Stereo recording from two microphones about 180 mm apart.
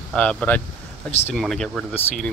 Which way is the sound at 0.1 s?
5° left (ahead or behind).